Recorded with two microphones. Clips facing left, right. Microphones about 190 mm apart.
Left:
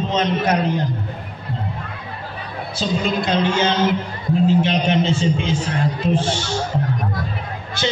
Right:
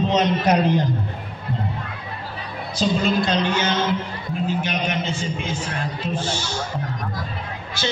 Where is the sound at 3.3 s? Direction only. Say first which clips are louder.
Left 3 dB; 25° left (ahead or behind).